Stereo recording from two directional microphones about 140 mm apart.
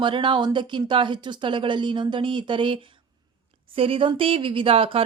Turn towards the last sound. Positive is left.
turn(degrees=-40)  # may be behind; listen again after turning